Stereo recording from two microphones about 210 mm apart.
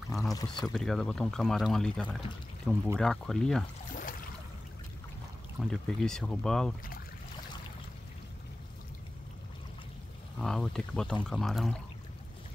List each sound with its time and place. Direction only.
0.3 s speech: 15° left (ahead or behind)
0.7 s speech: centre (ahead or behind)
5.6 s speech: 5° left (ahead or behind)
10.4 s speech: centre (ahead or behind)